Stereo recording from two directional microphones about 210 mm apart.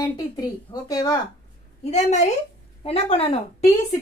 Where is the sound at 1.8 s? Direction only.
35° left (ahead or behind).